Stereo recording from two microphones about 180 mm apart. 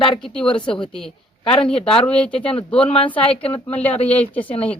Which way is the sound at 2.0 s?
5° left (ahead or behind).